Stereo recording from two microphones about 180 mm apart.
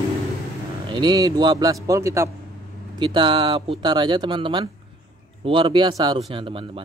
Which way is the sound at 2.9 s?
25° right (ahead or behind).